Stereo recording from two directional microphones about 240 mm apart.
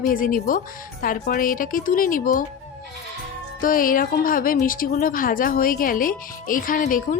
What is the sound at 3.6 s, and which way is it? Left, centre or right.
Speech, left.